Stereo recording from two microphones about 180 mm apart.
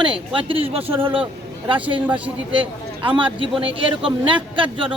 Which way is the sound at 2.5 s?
30° right (ahead or behind).